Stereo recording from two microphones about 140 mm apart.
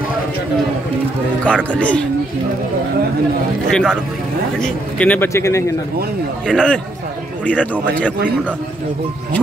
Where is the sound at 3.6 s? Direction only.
5° left (ahead or behind); by 5.6 s 20° left (ahead or behind).